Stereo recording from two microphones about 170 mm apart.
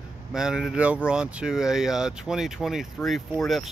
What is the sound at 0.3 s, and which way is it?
Speech, 5° right (ahead or behind).